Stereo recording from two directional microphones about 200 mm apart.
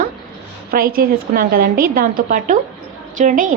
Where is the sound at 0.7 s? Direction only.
45° right (ahead or behind).